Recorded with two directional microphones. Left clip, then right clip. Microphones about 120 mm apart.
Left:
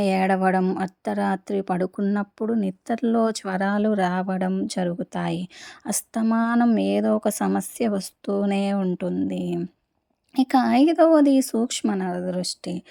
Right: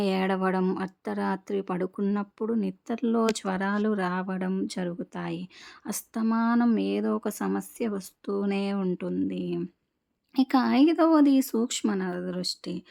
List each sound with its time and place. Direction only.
0.0 s speech: 30° left (ahead or behind)
0.6 s speech: 20° left (ahead or behind)
0.9 s speech: 30° left (ahead or behind)